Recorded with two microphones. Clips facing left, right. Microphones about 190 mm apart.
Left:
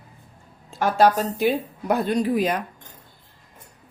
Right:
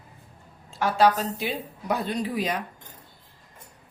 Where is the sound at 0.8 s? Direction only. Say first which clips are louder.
Left 3 dB; 45° left (ahead or behind).